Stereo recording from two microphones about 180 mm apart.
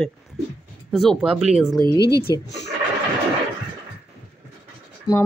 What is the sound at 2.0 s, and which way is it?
Speech, 65° left (ahead or behind).